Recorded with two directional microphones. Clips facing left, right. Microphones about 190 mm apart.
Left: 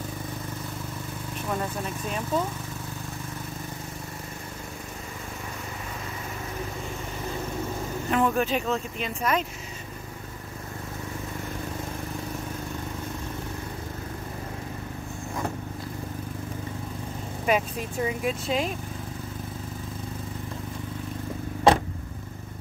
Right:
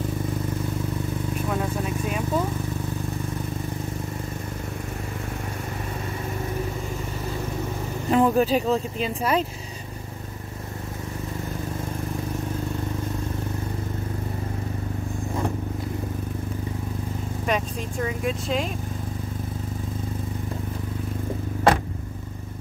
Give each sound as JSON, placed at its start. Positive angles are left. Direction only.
{"t": 1.5, "sound": "speech", "side_deg": -5}
{"t": 8.1, "sound": "speech", "side_deg": -30}
{"t": 17.5, "sound": "speech", "side_deg": 5}